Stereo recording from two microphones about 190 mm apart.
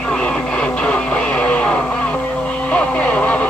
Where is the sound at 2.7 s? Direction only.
5° left (ahead or behind).